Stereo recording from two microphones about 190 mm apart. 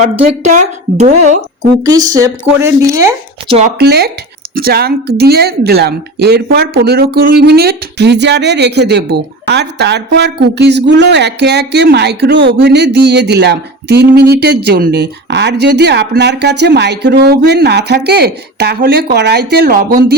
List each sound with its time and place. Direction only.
0.0 s speech: 40° right (ahead or behind)
1.8 s speech: 20° right (ahead or behind)
3.8 s speech: 60° right (ahead or behind)